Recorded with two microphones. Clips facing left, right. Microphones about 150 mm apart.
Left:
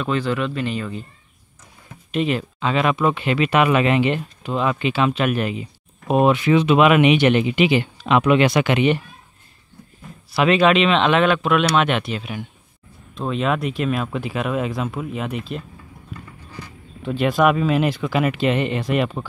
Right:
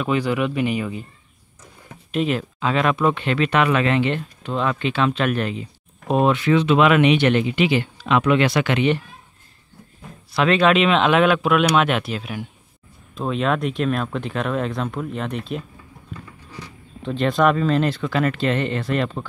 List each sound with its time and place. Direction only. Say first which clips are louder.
0.0 s speech: right 1 dB; 10° right (ahead or behind)
2.0 s speech: even; centre (ahead or behind)
10.3 s speech: left 1 dB; 5° left (ahead or behind)
17.0 s speech: left 1 dB; 5° left (ahead or behind)